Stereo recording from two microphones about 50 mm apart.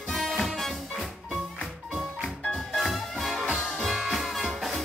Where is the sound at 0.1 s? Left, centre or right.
Centre.